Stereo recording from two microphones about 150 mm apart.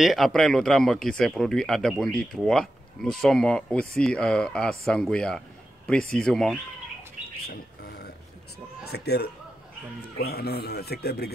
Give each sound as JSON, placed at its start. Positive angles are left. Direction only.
{"t": 0.0, "sound": "speech", "side_deg": 0}
{"t": 7.4, "sound": "bird", "side_deg": 90}
{"t": 8.8, "sound": "a man's voice", "side_deg": 90}